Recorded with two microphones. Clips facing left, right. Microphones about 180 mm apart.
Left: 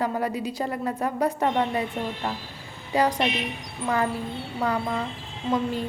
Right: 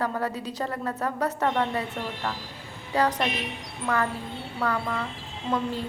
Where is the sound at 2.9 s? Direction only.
15° left (ahead or behind).